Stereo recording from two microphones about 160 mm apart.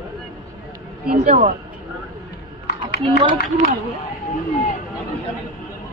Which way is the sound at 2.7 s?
90° left.